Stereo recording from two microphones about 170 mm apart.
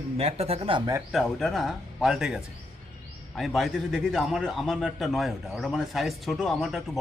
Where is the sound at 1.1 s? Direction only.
Centre (ahead or behind).